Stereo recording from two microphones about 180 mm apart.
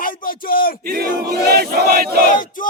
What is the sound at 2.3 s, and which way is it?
Battle cry, 45° left (ahead or behind).